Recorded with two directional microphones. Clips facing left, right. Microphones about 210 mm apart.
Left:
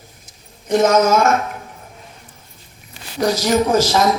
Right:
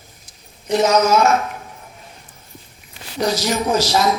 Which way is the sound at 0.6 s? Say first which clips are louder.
Left 2 dB; 50° left (ahead or behind).